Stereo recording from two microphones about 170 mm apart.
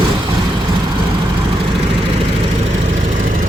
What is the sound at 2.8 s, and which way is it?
Vehicle, 45° right (ahead or behind).